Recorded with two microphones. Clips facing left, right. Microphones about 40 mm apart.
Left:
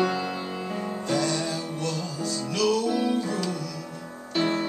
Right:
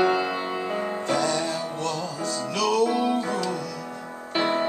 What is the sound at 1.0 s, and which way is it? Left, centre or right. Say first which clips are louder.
Music: right 1 dB; centre.